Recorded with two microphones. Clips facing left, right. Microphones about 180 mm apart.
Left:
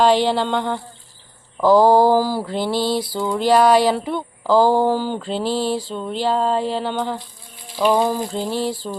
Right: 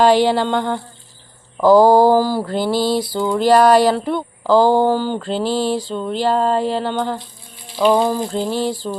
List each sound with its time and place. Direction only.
0.0 s mantra: 5° right (ahead or behind)